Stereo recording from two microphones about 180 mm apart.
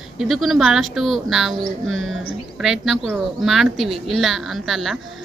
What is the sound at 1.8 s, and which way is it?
Speech, 90° right.